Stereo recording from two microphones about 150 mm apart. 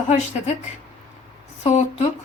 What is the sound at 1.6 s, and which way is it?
Speech, 45° left (ahead or behind).